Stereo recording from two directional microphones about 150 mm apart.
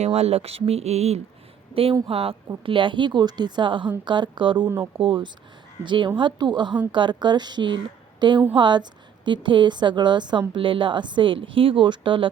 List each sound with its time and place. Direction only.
0.0 s a woman's voice: 45° right (ahead or behind)
4.6 s speech: 15° right (ahead or behind)
4.9 s a woman's voice: 35° right (ahead or behind)